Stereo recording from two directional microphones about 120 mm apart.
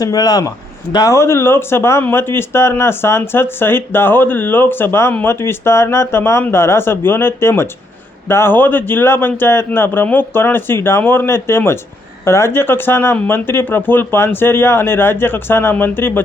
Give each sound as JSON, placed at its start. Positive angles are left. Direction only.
{"t": 0.0, "sound": "speech", "side_deg": 30}